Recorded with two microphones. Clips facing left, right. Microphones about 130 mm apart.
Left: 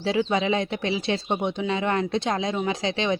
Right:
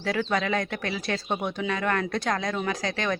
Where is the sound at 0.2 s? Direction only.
20° left (ahead or behind).